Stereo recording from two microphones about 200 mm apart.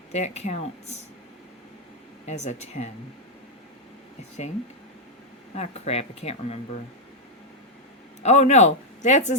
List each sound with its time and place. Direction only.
0.1 s speech: 35° left (ahead or behind)
2.2 s speech: 35° left (ahead or behind)
5.5 s speech: 30° left (ahead or behind)
8.2 s speech: 35° left (ahead or behind)